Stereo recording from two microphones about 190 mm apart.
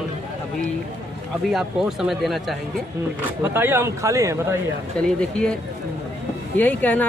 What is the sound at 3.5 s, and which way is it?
A man's voice, 10° right (ahead or behind).